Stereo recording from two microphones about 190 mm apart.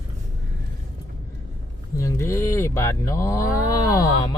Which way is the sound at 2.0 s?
15° left (ahead or behind).